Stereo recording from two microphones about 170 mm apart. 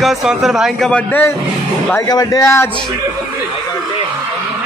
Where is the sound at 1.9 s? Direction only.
20° left (ahead or behind).